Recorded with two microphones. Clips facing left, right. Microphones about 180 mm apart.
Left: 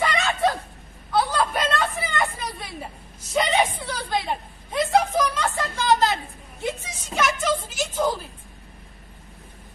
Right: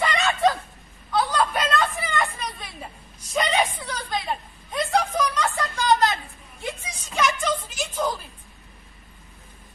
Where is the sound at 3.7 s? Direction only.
25° left (ahead or behind).